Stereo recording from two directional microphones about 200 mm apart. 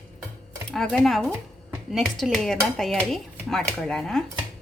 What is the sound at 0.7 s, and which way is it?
Dishes, centre (ahead or behind).